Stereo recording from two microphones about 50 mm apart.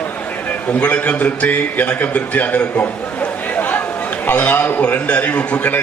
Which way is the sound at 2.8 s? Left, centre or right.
Left.